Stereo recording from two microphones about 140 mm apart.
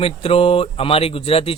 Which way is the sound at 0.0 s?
45° left (ahead or behind).